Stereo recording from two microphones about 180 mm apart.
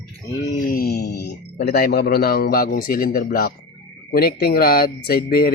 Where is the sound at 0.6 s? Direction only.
55° left (ahead or behind).